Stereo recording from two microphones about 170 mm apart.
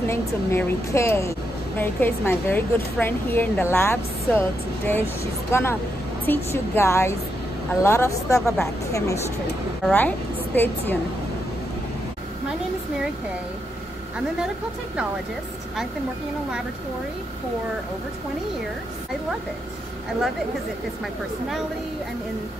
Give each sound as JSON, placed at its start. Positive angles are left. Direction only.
{"t": 0.1, "sound": "a woman's voice", "side_deg": 15}